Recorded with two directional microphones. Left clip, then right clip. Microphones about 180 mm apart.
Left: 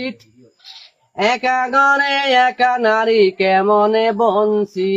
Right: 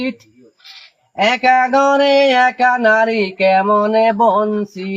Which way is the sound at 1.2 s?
15° left (ahead or behind).